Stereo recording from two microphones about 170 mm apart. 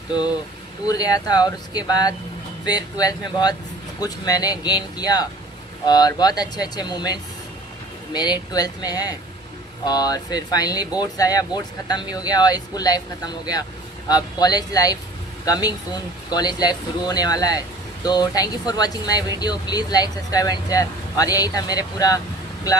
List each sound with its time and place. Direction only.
0.9 s speech: 20° left (ahead or behind)